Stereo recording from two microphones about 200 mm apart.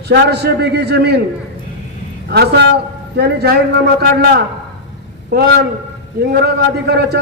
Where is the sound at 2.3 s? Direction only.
55° right (ahead or behind).